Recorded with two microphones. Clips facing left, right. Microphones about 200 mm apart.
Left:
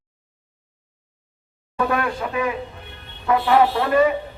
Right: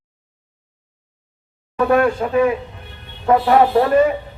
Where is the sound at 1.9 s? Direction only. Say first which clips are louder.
Right 11 dB; 40° right (ahead or behind).